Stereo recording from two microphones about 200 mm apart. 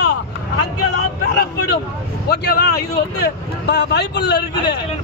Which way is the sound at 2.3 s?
55° left (ahead or behind).